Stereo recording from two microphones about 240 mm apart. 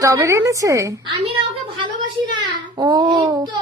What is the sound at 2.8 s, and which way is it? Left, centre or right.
Speech, centre.